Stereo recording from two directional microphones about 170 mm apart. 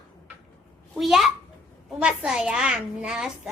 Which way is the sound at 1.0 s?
Centre (ahead or behind).